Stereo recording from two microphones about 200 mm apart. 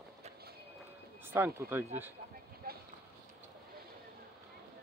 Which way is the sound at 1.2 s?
10° right (ahead or behind).